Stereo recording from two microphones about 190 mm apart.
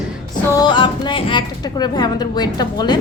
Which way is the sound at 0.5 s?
25° left (ahead or behind).